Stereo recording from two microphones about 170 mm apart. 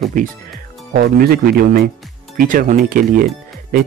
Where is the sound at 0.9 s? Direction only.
55° right (ahead or behind).